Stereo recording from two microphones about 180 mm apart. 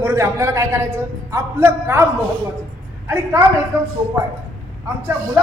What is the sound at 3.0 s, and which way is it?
Speech, 15° right (ahead or behind).